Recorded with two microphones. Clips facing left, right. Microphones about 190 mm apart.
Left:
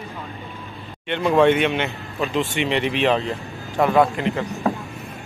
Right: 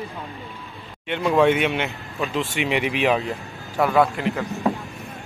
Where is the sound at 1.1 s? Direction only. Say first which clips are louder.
Left 2 dB; centre (ahead or behind).